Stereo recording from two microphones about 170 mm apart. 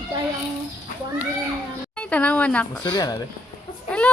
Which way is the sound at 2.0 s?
10° left (ahead or behind).